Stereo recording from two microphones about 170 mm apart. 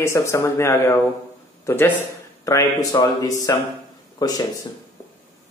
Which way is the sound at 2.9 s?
20° left (ahead or behind).